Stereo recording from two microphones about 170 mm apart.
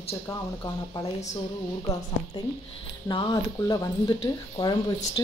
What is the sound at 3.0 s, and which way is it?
Speech, 25° left (ahead or behind).